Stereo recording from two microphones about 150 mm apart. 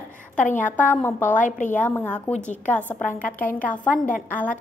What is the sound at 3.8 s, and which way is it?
Speech, 60° left (ahead or behind).